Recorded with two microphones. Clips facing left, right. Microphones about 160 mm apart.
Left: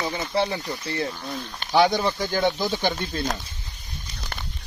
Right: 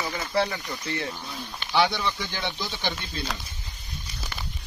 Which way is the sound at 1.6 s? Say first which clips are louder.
Left 5 dB; 45° left (ahead or behind).